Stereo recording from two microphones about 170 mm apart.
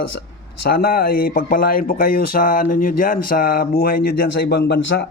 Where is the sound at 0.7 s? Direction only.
60° left (ahead or behind).